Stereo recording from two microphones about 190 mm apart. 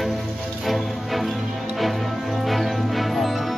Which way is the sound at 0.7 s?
Centre (ahead or behind).